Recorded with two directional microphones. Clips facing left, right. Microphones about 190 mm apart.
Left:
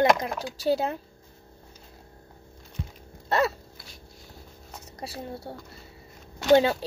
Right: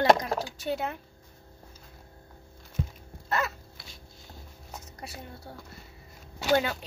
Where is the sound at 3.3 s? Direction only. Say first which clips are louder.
Left 6 dB; 35° left (ahead or behind).